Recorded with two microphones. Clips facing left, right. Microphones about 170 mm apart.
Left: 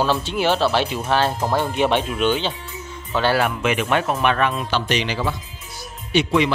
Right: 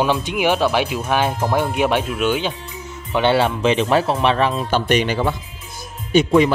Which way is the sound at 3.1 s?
20° right (ahead or behind).